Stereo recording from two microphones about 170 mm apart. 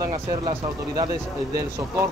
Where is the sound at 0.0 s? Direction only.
20° right (ahead or behind).